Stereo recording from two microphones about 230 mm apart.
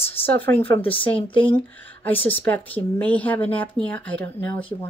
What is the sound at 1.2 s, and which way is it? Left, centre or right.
Speech, left.